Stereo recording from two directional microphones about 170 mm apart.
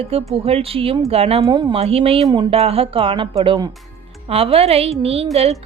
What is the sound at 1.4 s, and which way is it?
A woman's voice, 25° right (ahead or behind).